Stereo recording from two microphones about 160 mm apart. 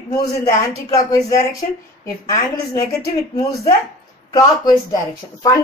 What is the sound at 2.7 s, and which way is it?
Speech, 20° left (ahead or behind).